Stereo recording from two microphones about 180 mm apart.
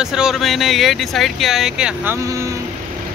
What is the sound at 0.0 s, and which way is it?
Speech, 5° right (ahead or behind).